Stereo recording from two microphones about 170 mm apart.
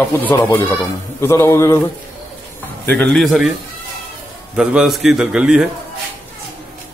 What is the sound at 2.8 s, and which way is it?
Speech, 10° left (ahead or behind).